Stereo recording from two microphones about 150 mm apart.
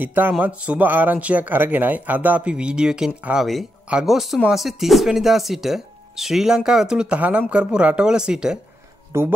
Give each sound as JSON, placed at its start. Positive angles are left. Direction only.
{"t": 0.0, "sound": "speech", "side_deg": -10}
{"t": 9.1, "sound": "speech", "side_deg": -15}